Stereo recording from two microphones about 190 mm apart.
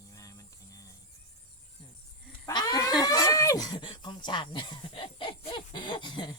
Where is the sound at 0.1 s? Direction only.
15° left (ahead or behind).